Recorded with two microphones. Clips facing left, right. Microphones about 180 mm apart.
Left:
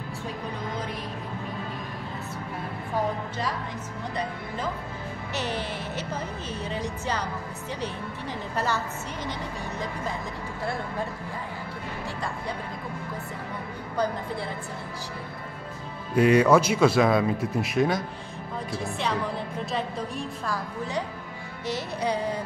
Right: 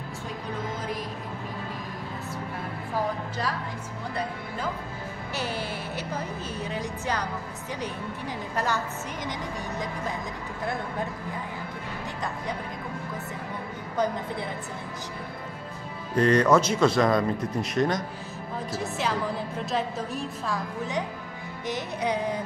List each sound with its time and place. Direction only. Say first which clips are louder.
8.5 s a woman's voice: even; 15° right (ahead or behind)
16.2 s a woman's voice: left 2 dB; 10° left (ahead or behind)
21.6 s a woman's voice: left 1 dB; 20° right (ahead or behind)